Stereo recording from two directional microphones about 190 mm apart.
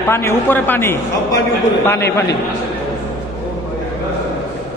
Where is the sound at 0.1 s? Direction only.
15° left (ahead or behind).